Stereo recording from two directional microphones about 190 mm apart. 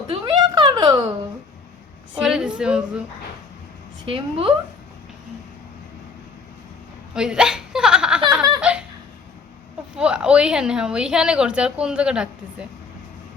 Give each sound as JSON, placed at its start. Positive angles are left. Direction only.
{"t": 0.1, "sound": "a sound", "side_deg": -25}
{"t": 2.2, "sound": "a woman's voice", "side_deg": -5}
{"t": 4.0, "sound": "a woman's voice", "side_deg": -30}
{"t": 7.1, "sound": "hiccup", "side_deg": -5}
{"t": 8.7, "sound": "laughter", "side_deg": -5}
{"t": 9.9, "sound": "a woman's voice", "side_deg": -5}